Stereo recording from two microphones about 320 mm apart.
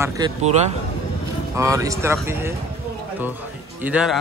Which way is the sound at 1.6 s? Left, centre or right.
Centre.